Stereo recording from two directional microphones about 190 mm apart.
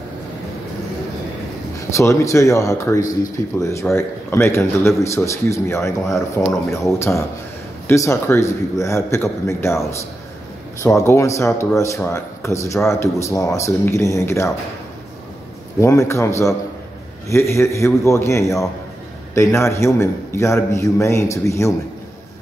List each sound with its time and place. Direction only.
1.8 s speech: 15° left (ahead or behind)
10.8 s speech: 15° left (ahead or behind)
15.8 s speech: 15° left (ahead or behind)